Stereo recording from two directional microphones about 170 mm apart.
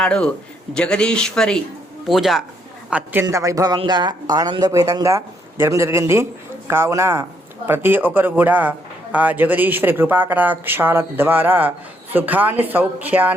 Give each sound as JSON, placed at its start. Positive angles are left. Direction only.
{"t": 0.0, "sound": "a man's voice", "side_deg": 5}
{"t": 2.9, "sound": "speech", "side_deg": -10}